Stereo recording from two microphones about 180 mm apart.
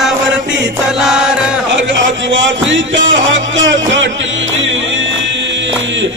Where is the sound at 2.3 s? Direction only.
90° right.